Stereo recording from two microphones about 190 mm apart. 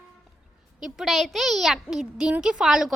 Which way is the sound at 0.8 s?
Centre (ahead or behind).